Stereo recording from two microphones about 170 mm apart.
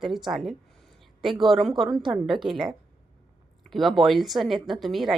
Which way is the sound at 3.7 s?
Centre (ahead or behind).